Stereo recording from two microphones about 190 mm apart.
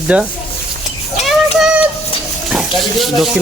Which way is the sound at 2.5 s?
Centre (ahead or behind).